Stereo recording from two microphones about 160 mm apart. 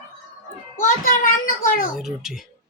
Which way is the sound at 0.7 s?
55° left (ahead or behind).